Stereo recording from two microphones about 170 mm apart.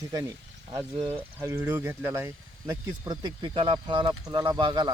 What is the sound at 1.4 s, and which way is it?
Speech, 15° right (ahead or behind).